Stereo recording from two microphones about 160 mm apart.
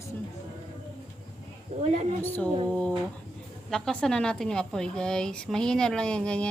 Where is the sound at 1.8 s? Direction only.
45° right (ahead or behind).